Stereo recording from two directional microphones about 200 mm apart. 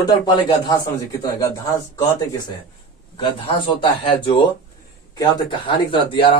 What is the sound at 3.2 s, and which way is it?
Speech, 25° left (ahead or behind).